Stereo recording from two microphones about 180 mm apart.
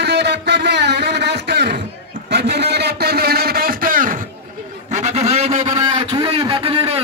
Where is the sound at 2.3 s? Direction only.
70° right (ahead or behind).